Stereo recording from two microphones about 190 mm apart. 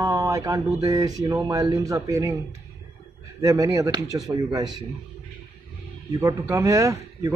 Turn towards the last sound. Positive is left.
turn(degrees=-15)  # may be behind; listen again after turning